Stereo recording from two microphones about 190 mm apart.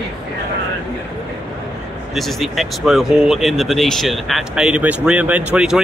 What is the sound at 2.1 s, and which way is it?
Speech, centre (ahead or behind).